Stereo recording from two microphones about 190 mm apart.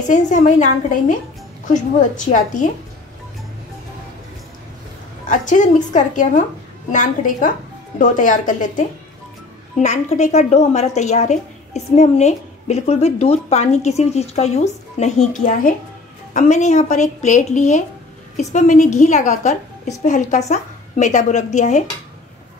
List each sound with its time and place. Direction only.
0.1 s a woman's voice: 40° left (ahead or behind)
5.3 s a woman's voice: 40° left (ahead or behind)